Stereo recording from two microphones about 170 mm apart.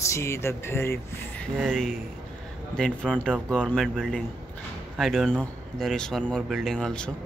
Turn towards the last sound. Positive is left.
turn(degrees=5)  # may be behind; listen again after turning